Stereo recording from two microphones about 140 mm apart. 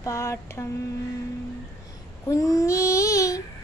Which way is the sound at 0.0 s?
20° left (ahead or behind).